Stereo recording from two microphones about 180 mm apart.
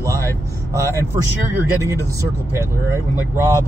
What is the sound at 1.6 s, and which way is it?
Speech, 15° right (ahead or behind).